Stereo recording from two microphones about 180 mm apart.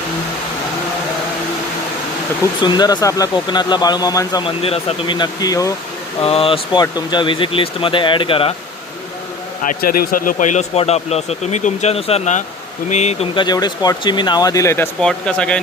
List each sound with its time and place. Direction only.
2.6 s speech: 25° left (ahead or behind)
6.2 s speech: 30° left (ahead or behind)
9.6 s speech: 55° left (ahead or behind); by 14.8 s 15° left (ahead or behind)
15.0 s speech: 5° left (ahead or behind)